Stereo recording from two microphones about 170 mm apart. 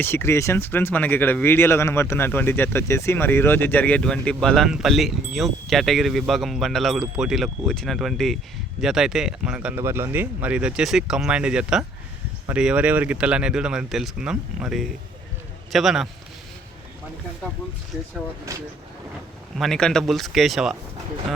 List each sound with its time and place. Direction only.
0.0 s speech: 15° left (ahead or behind); by 16.0 s centre (ahead or behind)
18.5 s speech: 20° right (ahead or behind)
19.5 s speech: centre (ahead or behind)